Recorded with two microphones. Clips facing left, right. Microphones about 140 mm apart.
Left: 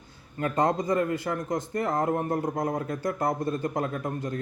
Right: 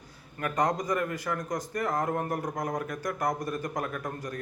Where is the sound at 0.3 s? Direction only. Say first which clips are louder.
Left 3 dB; 25° left (ahead or behind).